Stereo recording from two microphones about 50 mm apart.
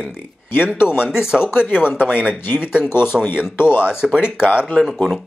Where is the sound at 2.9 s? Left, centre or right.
Left.